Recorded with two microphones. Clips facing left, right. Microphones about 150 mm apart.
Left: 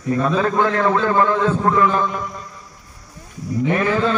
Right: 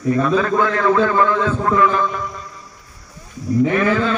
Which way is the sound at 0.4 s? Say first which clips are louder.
Even; 30° left (ahead or behind).